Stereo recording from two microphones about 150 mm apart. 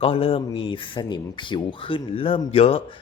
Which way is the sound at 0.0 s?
40° left (ahead or behind).